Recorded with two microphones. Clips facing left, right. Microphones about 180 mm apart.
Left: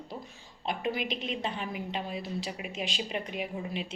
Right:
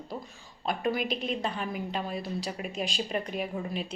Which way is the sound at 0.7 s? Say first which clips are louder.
Right 3 dB; 45° right (ahead or behind).